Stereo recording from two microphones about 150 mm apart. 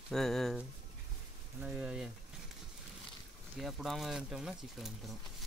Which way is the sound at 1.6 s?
10° right (ahead or behind).